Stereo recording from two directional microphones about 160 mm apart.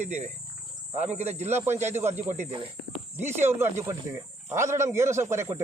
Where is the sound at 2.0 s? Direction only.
15° right (ahead or behind).